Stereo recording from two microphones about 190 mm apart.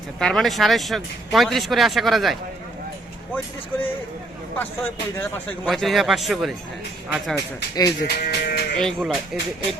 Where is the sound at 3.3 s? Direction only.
10° left (ahead or behind).